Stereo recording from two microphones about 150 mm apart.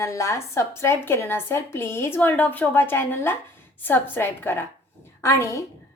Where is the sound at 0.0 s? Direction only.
20° left (ahead or behind).